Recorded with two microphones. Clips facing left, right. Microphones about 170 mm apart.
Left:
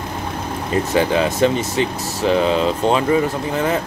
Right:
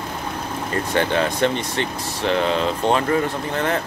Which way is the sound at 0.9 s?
10° left (ahead or behind).